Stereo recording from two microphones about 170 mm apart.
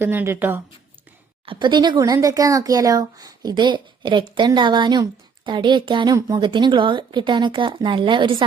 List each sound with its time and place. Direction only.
0.0 s a woman's voice: 15° right (ahead or behind)
1.5 s speech: 25° right (ahead or behind)